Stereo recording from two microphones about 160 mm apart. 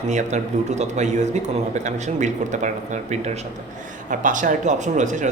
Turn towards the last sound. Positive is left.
turn(degrees=-50)  # may be behind; listen again after turning